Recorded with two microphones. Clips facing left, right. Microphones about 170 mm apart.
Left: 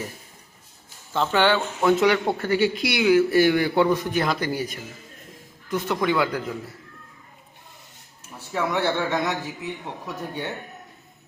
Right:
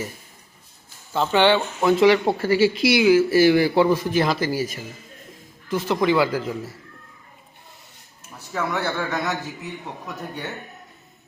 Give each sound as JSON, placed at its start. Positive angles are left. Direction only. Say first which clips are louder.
{"t": 1.1, "sound": "speech", "louder": "right 3 dB", "side_deg": -10}
{"t": 5.7, "sound": "speech", "louder": "right 3 dB", "side_deg": -5}
{"t": 8.5, "sound": "a man's voice", "louder": "left 2 dB", "side_deg": 20}